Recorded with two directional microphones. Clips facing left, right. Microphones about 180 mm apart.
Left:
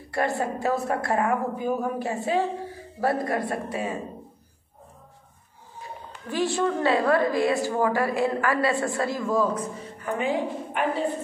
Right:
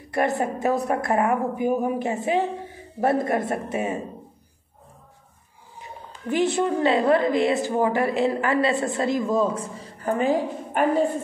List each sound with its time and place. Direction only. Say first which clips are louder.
0.1 s a woman's voice: right 3 dB; 20° right (ahead or behind)
6.3 s a woman's voice: right 3 dB; 20° right (ahead or behind); by 10.9 s 40° right (ahead or behind)